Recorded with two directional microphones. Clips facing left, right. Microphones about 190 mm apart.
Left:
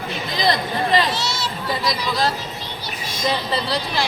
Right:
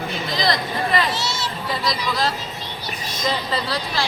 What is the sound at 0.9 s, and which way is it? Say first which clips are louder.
Speech: left 2 dB; 30° left (ahead or behind).